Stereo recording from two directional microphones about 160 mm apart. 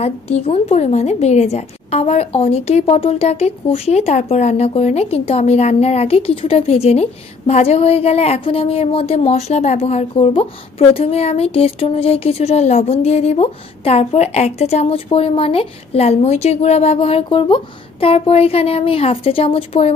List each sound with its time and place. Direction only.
0.0 s a woman's voice: 40° left (ahead or behind)